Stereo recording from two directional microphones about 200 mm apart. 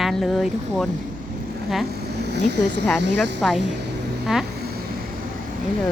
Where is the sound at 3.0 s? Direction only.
60° right (ahead or behind).